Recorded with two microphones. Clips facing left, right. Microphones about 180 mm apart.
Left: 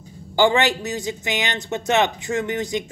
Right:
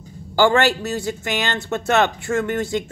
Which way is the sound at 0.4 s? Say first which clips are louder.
Right 2 dB; 20° left (ahead or behind).